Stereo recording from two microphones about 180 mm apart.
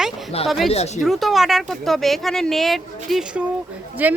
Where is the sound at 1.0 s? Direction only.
Centre (ahead or behind).